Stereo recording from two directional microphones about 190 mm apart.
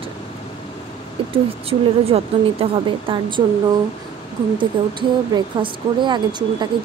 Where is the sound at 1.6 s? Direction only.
30° right (ahead or behind).